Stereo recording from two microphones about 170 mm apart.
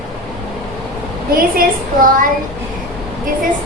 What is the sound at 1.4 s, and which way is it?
Speech, 55° right (ahead or behind).